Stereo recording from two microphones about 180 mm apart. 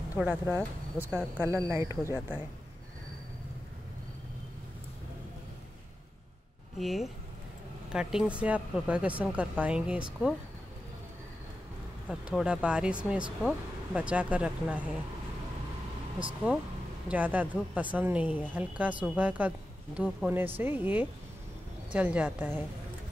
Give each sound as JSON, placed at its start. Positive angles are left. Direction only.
{"t": 0.2, "sound": "speech", "side_deg": -10}
{"t": 6.8, "sound": "speech", "side_deg": 0}
{"t": 12.1, "sound": "speech", "side_deg": -5}
{"t": 17.1, "sound": "speech", "side_deg": -10}